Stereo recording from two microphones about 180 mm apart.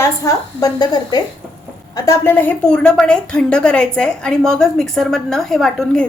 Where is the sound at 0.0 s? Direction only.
20° left (ahead or behind).